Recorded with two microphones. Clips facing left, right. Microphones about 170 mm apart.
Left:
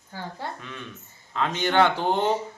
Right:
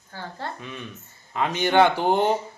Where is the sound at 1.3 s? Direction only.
15° right (ahead or behind).